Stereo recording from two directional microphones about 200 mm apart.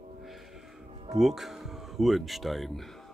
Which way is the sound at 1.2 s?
Centre (ahead or behind).